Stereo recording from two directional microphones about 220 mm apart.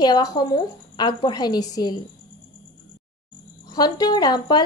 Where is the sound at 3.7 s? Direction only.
20° left (ahead or behind).